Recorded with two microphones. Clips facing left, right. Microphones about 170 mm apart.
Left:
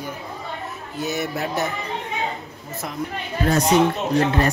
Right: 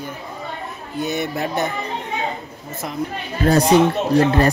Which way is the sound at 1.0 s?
5° left (ahead or behind).